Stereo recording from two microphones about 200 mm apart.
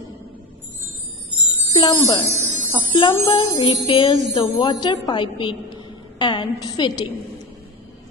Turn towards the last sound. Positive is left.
turn(degrees=20)  # may be behind; listen again after turning